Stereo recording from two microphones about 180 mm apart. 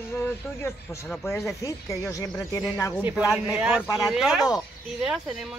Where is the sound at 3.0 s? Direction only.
10° right (ahead or behind).